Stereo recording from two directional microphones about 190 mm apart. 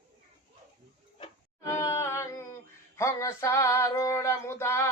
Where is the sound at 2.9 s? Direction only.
15° left (ahead or behind).